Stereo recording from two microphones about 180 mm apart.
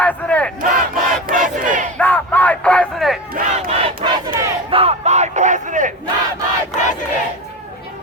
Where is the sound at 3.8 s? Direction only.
25° right (ahead or behind); by 5.9 s 45° right (ahead or behind).